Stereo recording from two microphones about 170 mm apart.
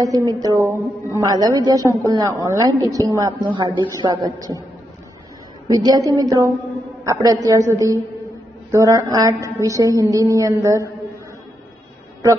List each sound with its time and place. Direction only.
0.3 s a woman's voice: 20° right (ahead or behind)
5.7 s a woman's voice: 20° right (ahead or behind)